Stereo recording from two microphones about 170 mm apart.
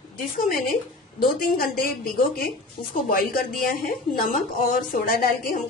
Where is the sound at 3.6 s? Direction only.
60° left (ahead or behind).